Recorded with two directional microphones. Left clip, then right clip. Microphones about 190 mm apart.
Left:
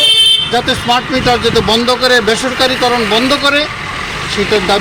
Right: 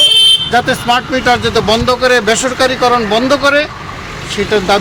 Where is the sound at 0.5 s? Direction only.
30° right (ahead or behind).